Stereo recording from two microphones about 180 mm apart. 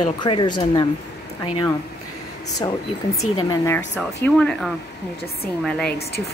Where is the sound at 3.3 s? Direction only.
20° left (ahead or behind).